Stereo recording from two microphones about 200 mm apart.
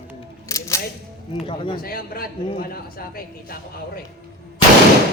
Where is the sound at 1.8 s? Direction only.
50° left (ahead or behind).